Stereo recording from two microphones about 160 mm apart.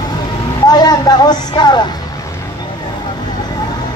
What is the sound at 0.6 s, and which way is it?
Vehicle, 25° left (ahead or behind).